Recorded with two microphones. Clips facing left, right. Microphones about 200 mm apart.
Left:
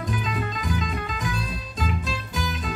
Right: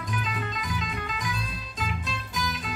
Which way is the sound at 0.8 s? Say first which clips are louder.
Left 4 dB; 40° left (ahead or behind).